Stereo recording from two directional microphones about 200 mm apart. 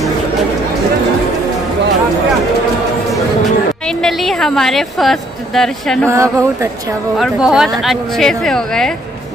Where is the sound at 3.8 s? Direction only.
Centre (ahead or behind).